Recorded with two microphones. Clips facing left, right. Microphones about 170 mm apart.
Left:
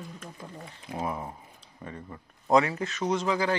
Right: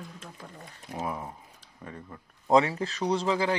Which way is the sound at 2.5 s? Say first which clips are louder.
Right 1 dB; 25° right (ahead or behind).